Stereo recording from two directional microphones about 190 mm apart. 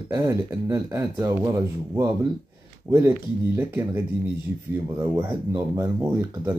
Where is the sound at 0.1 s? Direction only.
15° right (ahead or behind).